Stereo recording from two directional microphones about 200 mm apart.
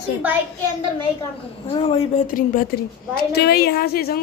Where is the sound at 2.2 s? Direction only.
45° left (ahead or behind).